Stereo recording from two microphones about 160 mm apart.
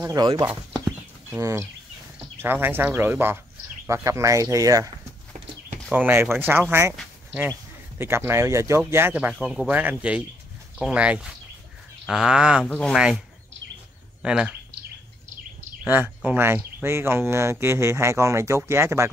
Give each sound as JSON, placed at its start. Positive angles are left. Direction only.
{"t": 0.0, "sound": "speech", "side_deg": -25}
{"t": 1.4, "sound": "speech", "side_deg": -20}
{"t": 5.9, "sound": "speech", "side_deg": -10}
{"t": 8.0, "sound": "speech", "side_deg": -15}
{"t": 9.3, "sound": "speech", "side_deg": 0}
{"t": 12.6, "sound": "speech", "side_deg": 5}
{"t": 12.9, "sound": "speech", "side_deg": -5}
{"t": 14.2, "sound": "speech", "side_deg": -5}
{"t": 15.8, "sound": "speech", "side_deg": -10}